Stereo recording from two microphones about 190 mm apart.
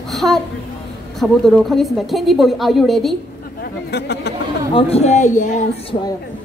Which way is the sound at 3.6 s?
60° left (ahead or behind).